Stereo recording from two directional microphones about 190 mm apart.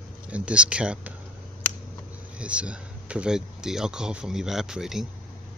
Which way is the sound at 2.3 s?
5° right (ahead or behind).